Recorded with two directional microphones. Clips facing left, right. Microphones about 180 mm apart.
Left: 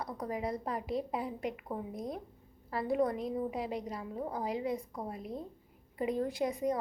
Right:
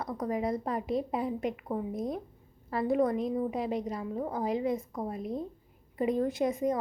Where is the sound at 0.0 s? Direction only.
20° right (ahead or behind).